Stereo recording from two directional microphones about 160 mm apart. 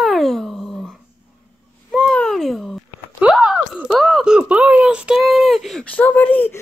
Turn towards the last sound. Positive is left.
turn(degrees=10)  # may be behind; listen again after turning